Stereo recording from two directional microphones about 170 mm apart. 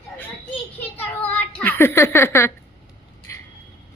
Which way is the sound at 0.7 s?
10° left (ahead or behind).